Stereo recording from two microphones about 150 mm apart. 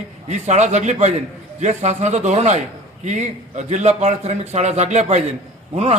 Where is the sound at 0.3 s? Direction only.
50° right (ahead or behind).